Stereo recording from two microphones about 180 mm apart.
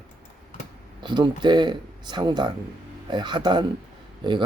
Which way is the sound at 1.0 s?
25° right (ahead or behind).